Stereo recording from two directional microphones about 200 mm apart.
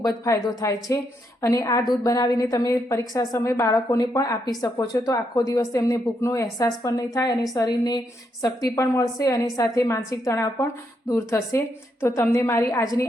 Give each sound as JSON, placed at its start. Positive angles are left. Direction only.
{"t": 0.0, "sound": "a woman's voice", "side_deg": 15}